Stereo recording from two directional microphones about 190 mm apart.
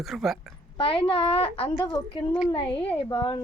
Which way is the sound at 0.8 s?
30° left (ahead or behind).